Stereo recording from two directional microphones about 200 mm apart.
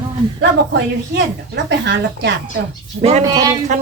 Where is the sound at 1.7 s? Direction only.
60° right (ahead or behind).